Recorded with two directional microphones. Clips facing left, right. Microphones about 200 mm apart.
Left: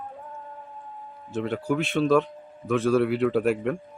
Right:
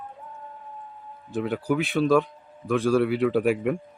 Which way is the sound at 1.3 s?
Centre (ahead or behind).